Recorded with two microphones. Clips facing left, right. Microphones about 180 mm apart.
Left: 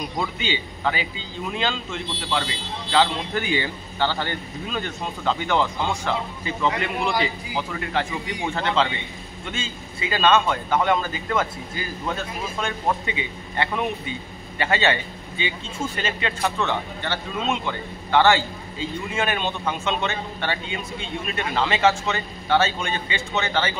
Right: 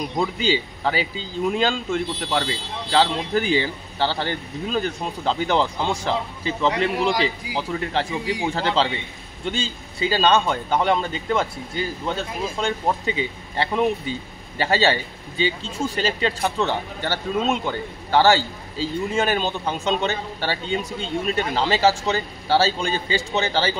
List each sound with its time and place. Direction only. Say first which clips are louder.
0.4 s a man's voice: right 5 dB; 35° right (ahead or behind)